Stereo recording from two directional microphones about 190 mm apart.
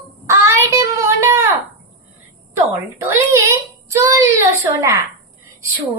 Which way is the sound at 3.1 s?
15° right (ahead or behind).